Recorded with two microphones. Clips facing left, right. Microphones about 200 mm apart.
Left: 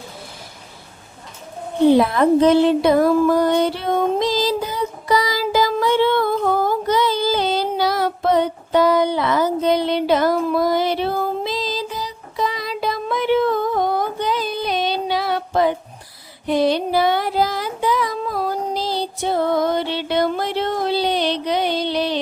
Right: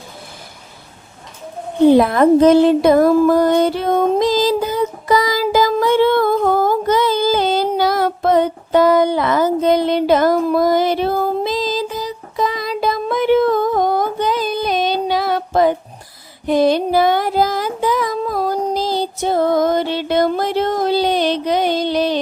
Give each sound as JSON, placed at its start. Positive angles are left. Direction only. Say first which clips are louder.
{"t": 1.9, "sound": "music", "louder": "right 3 dB", "side_deg": -50}
{"t": 16.5, "sound": "child singing", "louder": "right 4 dB", "side_deg": -45}